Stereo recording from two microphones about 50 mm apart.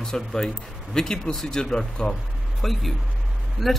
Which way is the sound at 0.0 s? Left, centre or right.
Centre.